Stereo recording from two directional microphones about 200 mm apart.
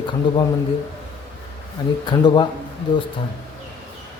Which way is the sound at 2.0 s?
20° left (ahead or behind).